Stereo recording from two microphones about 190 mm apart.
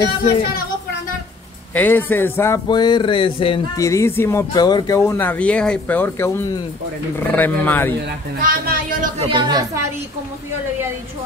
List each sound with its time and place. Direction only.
1.7 s speech: 10° left (ahead or behind)
8.4 s a woman's voice: 50° right (ahead or behind)
9.2 s a woman's voice: 25° right (ahead or behind)